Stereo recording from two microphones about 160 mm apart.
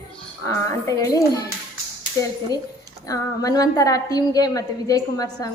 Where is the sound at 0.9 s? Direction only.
20° left (ahead or behind).